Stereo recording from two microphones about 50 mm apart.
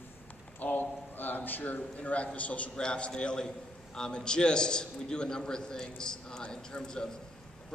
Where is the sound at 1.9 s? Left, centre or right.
Left.